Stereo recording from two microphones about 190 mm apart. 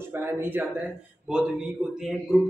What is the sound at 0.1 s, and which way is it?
Speech, 10° right (ahead or behind).